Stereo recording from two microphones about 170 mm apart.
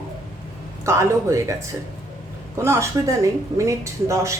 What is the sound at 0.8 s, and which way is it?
A woman's voice, 15° right (ahead or behind).